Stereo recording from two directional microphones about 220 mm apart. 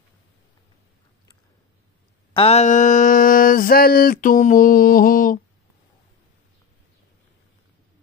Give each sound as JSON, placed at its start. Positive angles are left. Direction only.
{"t": 2.3, "sound": "mantra", "side_deg": 30}